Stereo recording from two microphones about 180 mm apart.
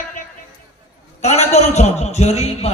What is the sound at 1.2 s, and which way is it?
A man's voice, 40° left (ahead or behind).